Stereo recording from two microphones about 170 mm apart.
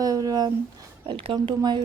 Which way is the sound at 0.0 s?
20° right (ahead or behind).